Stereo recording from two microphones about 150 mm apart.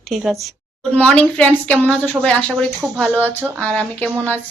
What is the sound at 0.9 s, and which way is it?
A woman's voice, 10° left (ahead or behind).